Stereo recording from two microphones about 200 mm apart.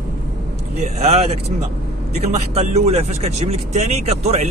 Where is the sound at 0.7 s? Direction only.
35° right (ahead or behind).